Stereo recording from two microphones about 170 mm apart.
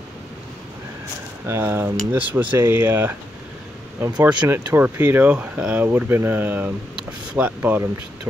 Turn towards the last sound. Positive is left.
turn(degrees=-10)  # may be behind; listen again after turning